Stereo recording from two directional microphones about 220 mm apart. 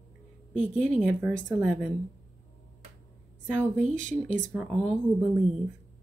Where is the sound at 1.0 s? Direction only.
Centre (ahead or behind).